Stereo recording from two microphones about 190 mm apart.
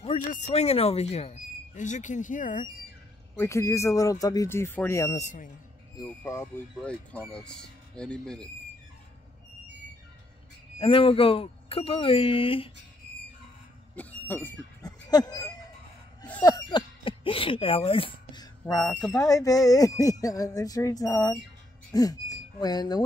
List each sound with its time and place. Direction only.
0.3 s speech: 35° left (ahead or behind)
3.3 s speech: 15° left (ahead or behind)
5.1 s speech: 40° left (ahead or behind)
5.9 s speech: 15° left (ahead or behind)
10.8 s speech: 30° left (ahead or behind)
13.9 s a sound: 10° left (ahead or behind)
16.4 s speech: 20° left (ahead or behind)